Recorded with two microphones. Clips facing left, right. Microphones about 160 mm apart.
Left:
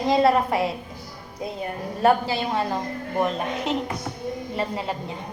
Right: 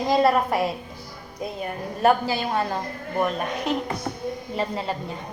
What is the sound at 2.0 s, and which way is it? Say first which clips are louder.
A woman's voice: even; 30° left (ahead or behind).